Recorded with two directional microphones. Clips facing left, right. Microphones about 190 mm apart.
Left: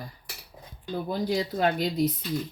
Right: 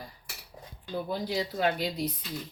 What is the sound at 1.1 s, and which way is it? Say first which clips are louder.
Speech: left 5 dB; 45° left (ahead or behind).